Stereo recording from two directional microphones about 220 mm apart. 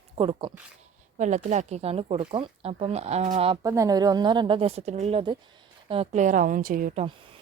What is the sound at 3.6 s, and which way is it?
A woman's voice, 15° right (ahead or behind).